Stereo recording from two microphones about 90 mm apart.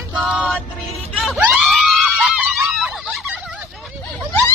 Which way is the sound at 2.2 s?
10° right (ahead or behind).